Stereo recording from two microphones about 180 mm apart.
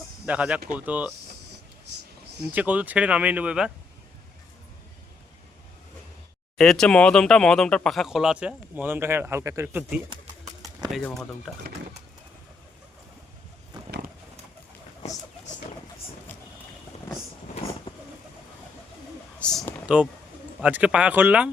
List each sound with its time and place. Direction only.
0.3 s speech: 5° right (ahead or behind)
2.5 s speech: 10° right (ahead or behind)
6.6 s speech: 5° left (ahead or behind)
10.6 s bird: 20° right (ahead or behind)
10.9 s speech: centre (ahead or behind)
17.9 s vehicle: 25° left (ahead or behind)
19.4 s a sound: 5° left (ahead or behind)
20.6 s speech: 5° right (ahead or behind)